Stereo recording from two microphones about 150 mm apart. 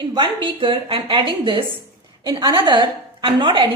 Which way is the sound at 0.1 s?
35° right (ahead or behind).